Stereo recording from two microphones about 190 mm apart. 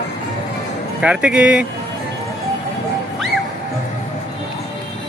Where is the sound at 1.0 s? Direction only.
5° right (ahead or behind).